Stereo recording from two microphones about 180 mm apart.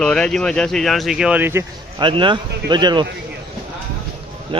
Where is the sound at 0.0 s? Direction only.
5° left (ahead or behind); by 1.6 s 10° right (ahead or behind).